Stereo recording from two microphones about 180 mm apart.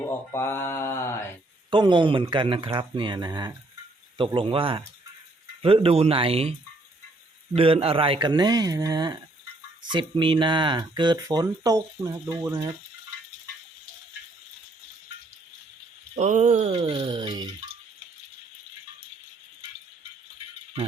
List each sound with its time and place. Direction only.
0.0 s mantra: 15° left (ahead or behind)
1.7 s speech: 25° right (ahead or behind)
7.5 s speech: 30° right (ahead or behind); by 12.7 s 15° right (ahead or behind)
16.1 s speech: 40° right (ahead or behind)